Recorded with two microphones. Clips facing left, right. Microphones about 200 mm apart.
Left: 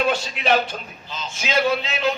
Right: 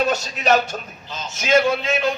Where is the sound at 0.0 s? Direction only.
45° right (ahead or behind).